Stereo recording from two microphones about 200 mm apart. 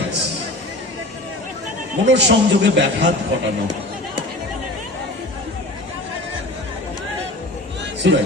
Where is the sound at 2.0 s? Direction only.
60° right (ahead or behind).